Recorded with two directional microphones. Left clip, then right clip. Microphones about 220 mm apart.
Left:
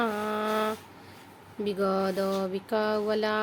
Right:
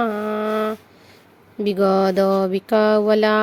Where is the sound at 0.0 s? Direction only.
25° right (ahead or behind).